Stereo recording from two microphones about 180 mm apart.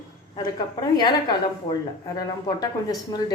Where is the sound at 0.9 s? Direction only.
25° left (ahead or behind).